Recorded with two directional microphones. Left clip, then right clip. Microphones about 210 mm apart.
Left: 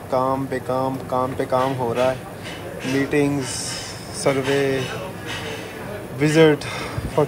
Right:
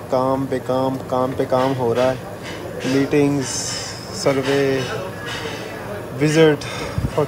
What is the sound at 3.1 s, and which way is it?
Speech, 20° right (ahead or behind).